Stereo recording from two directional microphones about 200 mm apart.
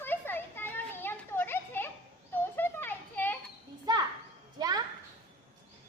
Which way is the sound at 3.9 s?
20° right (ahead or behind).